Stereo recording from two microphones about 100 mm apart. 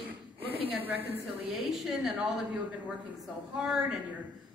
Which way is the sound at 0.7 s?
20° right (ahead or behind).